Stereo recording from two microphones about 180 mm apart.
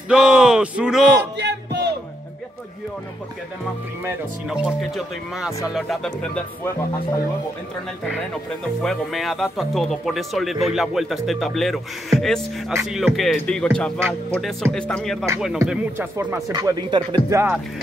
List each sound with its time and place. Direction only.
0.1 s speech: 5° right (ahead or behind)
1.3 s music: 75° right (ahead or behind)
4.5 s speech: centre (ahead or behind)
8.8 s speech: centre (ahead or behind)
15.6 s speech: 10° right (ahead or behind)